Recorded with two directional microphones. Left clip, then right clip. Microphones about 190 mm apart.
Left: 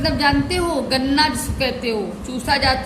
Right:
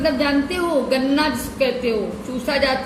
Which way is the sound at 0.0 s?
30° left (ahead or behind).